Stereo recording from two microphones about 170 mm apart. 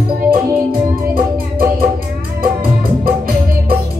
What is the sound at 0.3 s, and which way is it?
Music, 60° right (ahead or behind).